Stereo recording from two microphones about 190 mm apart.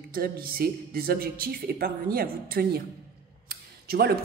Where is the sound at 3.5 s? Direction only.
55° right (ahead or behind).